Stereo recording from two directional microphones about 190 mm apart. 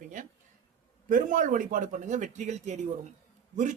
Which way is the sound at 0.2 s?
40° right (ahead or behind).